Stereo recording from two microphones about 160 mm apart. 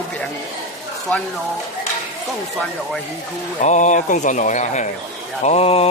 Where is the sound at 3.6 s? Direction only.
50° left (ahead or behind).